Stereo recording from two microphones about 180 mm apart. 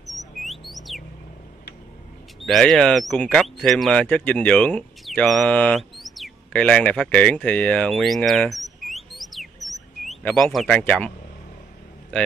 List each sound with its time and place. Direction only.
0.0 s rodents: centre (ahead or behind)
2.4 s a man's voice: centre (ahead or behind)